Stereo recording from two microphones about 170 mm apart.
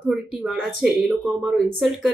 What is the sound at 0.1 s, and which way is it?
Speech, centre (ahead or behind).